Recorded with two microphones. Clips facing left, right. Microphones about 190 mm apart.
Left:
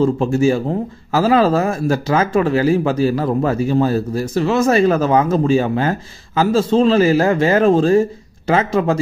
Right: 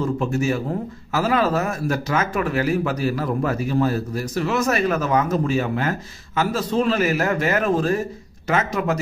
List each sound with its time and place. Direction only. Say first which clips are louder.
0.0 s speech: left 7 dB; 30° left (ahead or behind)